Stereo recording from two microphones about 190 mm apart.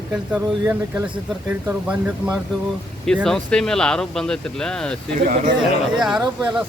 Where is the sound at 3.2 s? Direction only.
5° left (ahead or behind).